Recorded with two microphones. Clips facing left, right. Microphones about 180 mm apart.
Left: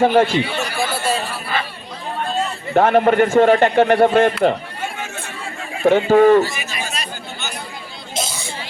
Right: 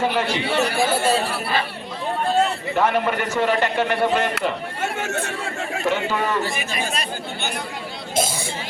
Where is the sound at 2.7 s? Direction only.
55° left (ahead or behind).